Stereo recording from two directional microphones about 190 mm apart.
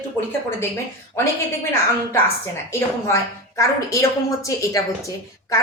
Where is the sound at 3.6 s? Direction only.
15° left (ahead or behind).